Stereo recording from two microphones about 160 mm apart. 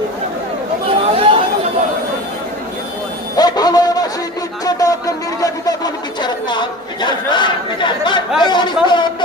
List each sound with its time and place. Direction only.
0.9 s chatter: 35° right (ahead or behind)
3.3 s a sound: 25° left (ahead or behind)
8.4 s chatter: 30° left (ahead or behind)